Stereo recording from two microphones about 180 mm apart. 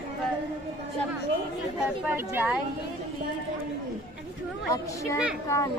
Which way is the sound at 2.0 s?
10° right (ahead or behind).